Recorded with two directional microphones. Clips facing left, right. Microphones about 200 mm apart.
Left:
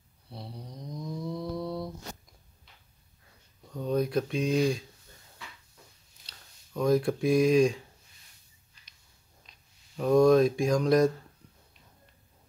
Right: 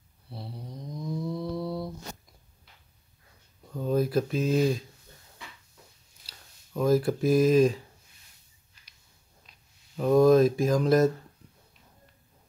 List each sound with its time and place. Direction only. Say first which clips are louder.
0.3 s mantra: right 2 dB; centre (ahead or behind)
3.7 s speech: right 2 dB; 5° right (ahead or behind)
6.2 s speech: right 1 dB; 5° right (ahead or behind)
9.9 s mantra: right 1 dB; centre (ahead or behind)